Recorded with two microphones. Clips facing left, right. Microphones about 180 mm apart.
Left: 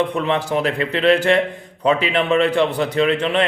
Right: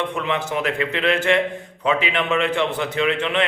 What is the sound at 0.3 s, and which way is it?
A man's voice, 35° left (ahead or behind).